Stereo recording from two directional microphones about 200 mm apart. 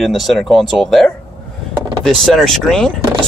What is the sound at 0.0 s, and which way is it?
Speech, centre (ahead or behind).